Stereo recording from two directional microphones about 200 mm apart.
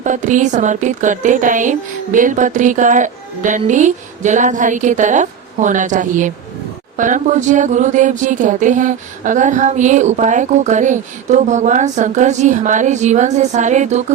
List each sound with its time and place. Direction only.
0.0 s speech: 40° right (ahead or behind)